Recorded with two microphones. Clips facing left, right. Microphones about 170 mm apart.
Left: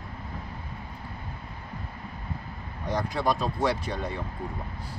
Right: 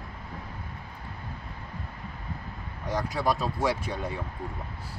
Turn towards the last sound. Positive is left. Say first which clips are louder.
# left 1 dB
turn(degrees=-10)  # may be behind; listen again after turning